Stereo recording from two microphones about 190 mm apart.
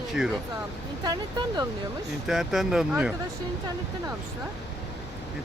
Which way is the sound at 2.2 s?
Centre (ahead or behind).